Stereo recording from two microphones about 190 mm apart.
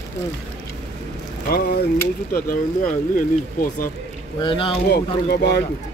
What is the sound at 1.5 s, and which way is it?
Speech, 55° left (ahead or behind).